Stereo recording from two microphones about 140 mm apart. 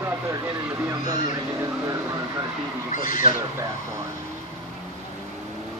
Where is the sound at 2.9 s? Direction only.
70° left (ahead or behind).